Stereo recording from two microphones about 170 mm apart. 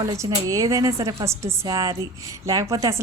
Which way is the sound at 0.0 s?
20° right (ahead or behind).